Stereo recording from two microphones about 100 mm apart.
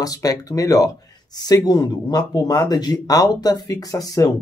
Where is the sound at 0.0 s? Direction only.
35° left (ahead or behind).